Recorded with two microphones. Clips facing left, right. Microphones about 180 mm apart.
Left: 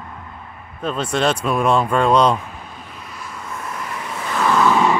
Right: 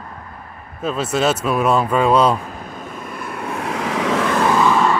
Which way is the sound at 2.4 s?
45° right (ahead or behind).